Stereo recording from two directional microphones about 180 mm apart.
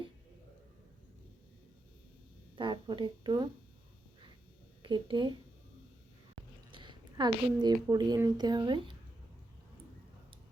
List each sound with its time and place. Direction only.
2.6 s speech: 25° right (ahead or behind)
4.8 s speech: 25° right (ahead or behind)
6.7 s a woman's voice: 25° right (ahead or behind)